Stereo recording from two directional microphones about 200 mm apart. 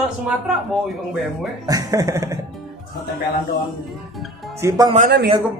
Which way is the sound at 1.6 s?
20° right (ahead or behind).